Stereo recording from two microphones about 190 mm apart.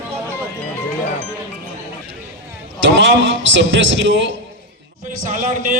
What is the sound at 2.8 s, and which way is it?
A man's voice, 70° right (ahead or behind).